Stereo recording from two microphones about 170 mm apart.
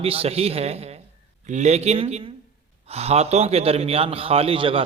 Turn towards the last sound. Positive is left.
turn(degrees=-30)  # may be behind; listen again after turning